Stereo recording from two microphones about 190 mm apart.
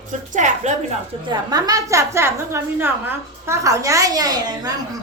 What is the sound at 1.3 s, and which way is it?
A woman's voice, 20° right (ahead or behind).